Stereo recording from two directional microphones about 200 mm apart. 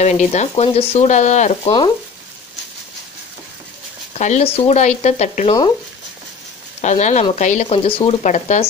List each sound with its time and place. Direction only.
0.0 s stir: 35° left (ahead or behind)
4.1 s stir: 35° left (ahead or behind)
6.8 s stir: 35° left (ahead or behind)